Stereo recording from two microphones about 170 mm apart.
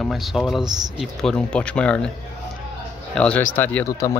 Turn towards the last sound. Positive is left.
turn(degrees=20)  # may be behind; listen again after turning